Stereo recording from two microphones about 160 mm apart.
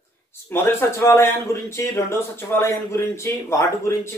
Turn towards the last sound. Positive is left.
turn(degrees=15)  # may be behind; listen again after turning